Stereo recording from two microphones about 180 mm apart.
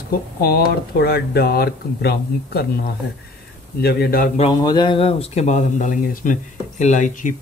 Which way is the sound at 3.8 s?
60° left (ahead or behind).